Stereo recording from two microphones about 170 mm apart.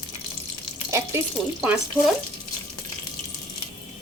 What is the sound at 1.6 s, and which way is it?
Speech, 5° right (ahead or behind).